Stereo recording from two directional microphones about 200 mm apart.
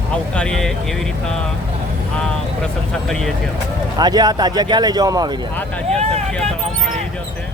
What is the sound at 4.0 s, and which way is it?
Speech, 20° right (ahead or behind).